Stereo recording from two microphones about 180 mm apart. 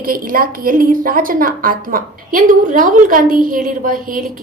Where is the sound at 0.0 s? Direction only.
50° right (ahead or behind).